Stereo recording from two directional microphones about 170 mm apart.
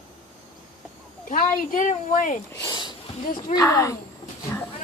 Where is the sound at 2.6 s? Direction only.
25° left (ahead or behind).